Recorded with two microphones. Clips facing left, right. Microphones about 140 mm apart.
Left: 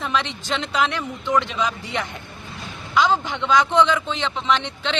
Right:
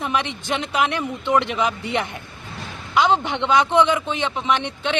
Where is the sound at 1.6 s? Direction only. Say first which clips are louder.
Right 3 dB; 60° right (ahead or behind).